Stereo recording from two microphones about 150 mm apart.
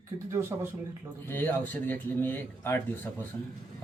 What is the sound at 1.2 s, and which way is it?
Speech, 15° left (ahead or behind).